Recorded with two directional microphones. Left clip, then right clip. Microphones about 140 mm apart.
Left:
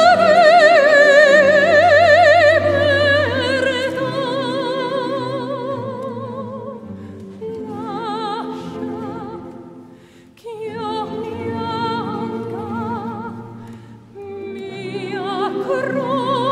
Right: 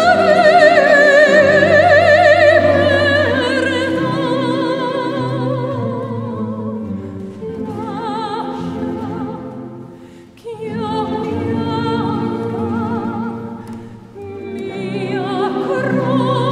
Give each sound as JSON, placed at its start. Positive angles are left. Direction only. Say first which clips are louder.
{"t": 0.0, "sound": "music", "louder": "even", "side_deg": 30}
{"t": 7.8, "sound": "music", "louder": "right 1 dB", "side_deg": 30}
{"t": 10.6, "sound": "music", "louder": "right 3 dB", "side_deg": 35}
{"t": 14.6, "sound": "music", "louder": "right 7 dB", "side_deg": 35}